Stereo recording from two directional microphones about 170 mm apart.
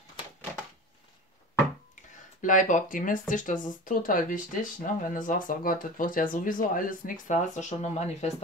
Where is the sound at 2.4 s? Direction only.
50° left (ahead or behind).